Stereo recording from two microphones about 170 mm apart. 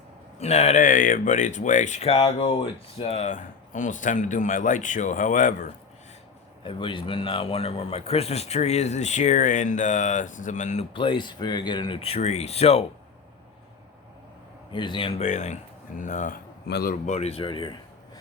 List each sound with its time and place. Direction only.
0.3 s speech: 40° left (ahead or behind)
6.7 s a man's voice: 30° left (ahead or behind)
10.9 s a man's voice: 30° left (ahead or behind)
14.7 s a man's voice: 30° left (ahead or behind)
15.2 s speech: 45° left (ahead or behind)
16.6 s speech: 75° left (ahead or behind)
17.1 s a man's voice: 40° left (ahead or behind)